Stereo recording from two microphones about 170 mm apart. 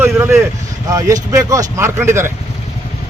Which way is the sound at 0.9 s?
20° right (ahead or behind).